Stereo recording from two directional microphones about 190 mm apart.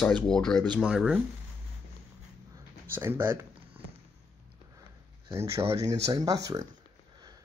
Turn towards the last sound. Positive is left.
turn(degrees=-20)  # may be behind; listen again after turning